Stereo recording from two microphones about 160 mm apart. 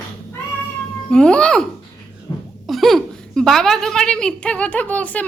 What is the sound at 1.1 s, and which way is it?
Speech, 5° left (ahead or behind).